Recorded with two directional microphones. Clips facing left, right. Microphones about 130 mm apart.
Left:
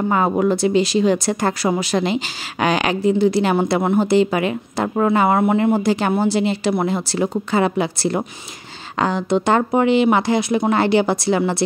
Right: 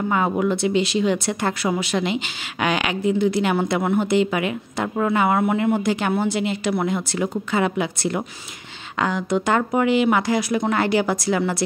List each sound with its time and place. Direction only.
0.1 s speech: 40° left (ahead or behind)